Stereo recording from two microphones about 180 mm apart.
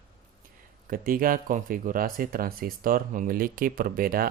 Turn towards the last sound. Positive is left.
turn(degrees=-55)  # may be behind; listen again after turning